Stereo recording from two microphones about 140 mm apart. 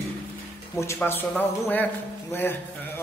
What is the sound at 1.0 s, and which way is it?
A man's voice, 15° left (ahead or behind).